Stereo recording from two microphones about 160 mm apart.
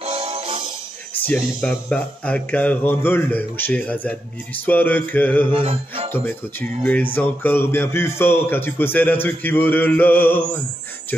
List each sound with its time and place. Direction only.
0.0 s music: 40° right (ahead or behind)
1.2 s speech: 5° left (ahead or behind)
5.5 s music: 35° right (ahead or behind)
6.8 s speech: 10° left (ahead or behind)